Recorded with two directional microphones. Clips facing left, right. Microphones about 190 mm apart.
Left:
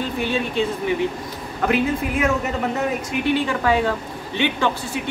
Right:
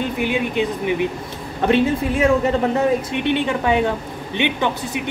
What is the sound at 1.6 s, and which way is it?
Speech, 25° right (ahead or behind).